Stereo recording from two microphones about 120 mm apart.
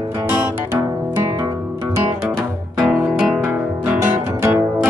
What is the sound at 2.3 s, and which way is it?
Music, 5° left (ahead or behind).